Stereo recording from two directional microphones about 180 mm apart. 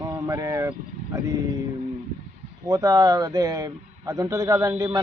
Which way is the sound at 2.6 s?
20° right (ahead or behind).